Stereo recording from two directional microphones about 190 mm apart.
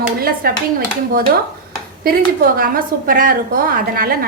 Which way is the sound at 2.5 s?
50° right (ahead or behind).